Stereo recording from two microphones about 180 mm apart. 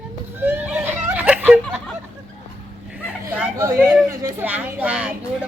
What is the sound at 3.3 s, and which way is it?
Chatter, 10° right (ahead or behind).